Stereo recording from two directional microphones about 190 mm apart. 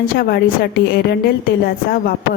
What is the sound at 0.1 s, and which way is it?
A woman's voice, 55° left (ahead or behind).